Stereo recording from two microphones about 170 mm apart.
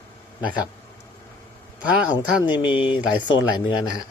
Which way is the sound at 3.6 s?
25° left (ahead or behind).